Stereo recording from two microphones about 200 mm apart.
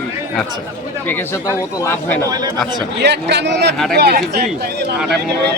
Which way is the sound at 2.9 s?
55° right (ahead or behind).